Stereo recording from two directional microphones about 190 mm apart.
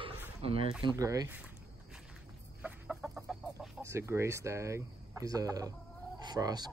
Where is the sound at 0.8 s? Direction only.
20° right (ahead or behind).